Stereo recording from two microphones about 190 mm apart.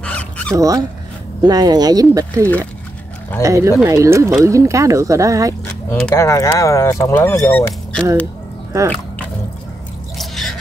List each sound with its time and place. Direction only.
0.0 s a sound: 5° left (ahead or behind)
0.6 s speech: 20° right (ahead or behind)
3.4 s speech: 15° right (ahead or behind)
5.9 s speech: 5° left (ahead or behind)
6.1 s speech: 15° left (ahead or behind)
8.7 s speech: 15° right (ahead or behind)
10.1 s drip: centre (ahead or behind)